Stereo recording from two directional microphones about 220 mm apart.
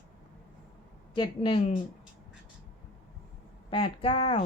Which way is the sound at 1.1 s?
20° left (ahead or behind).